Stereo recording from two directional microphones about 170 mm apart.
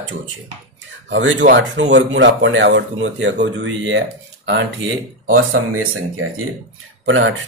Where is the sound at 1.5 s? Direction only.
90° right.